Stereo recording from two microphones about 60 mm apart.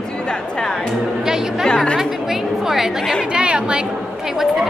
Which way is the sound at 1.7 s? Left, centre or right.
Centre.